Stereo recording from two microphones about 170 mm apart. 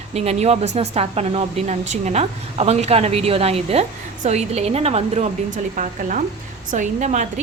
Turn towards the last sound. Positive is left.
turn(degrees=-45)  # may be behind; listen again after turning